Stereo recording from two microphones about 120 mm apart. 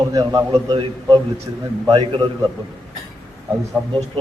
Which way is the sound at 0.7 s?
45° right (ahead or behind).